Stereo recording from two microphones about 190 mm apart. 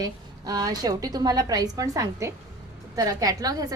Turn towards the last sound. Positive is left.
turn(degrees=-20)  # may be behind; listen again after turning